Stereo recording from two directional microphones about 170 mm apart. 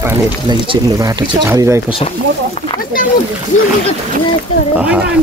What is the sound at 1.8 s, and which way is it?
Speech, 35° left (ahead or behind).